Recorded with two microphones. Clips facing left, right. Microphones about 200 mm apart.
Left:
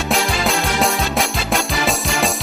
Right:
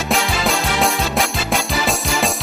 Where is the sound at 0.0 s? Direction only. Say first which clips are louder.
Even; centre (ahead or behind).